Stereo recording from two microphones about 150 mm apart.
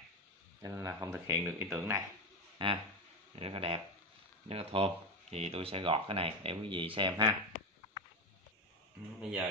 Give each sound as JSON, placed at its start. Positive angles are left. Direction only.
{"t": 0.6, "sound": "speech", "side_deg": -20}
{"t": 2.6, "sound": "speech", "side_deg": -30}
{"t": 9.2, "sound": "speech", "side_deg": -5}